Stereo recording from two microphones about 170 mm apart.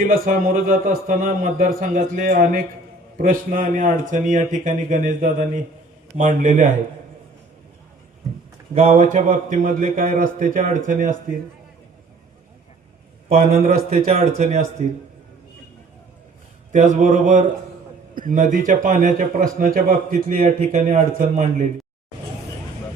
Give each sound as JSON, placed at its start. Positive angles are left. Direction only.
{"t": 0.0, "sound": "a man's voice", "side_deg": -55}
{"t": 8.7, "sound": "a man's voice", "side_deg": -40}
{"t": 13.2, "sound": "a man's voice", "side_deg": -55}
{"t": 16.7, "sound": "a man's voice", "side_deg": -45}